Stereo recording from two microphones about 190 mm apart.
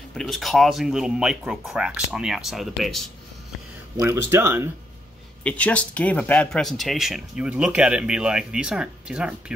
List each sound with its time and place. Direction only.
0.1 s speech: centre (ahead or behind)
3.9 s speech: 15° right (ahead or behind)
5.4 s speech: 5° left (ahead or behind)